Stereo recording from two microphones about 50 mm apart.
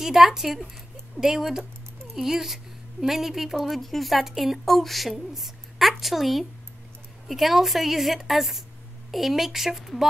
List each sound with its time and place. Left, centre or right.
0.0 s a woman's voice: centre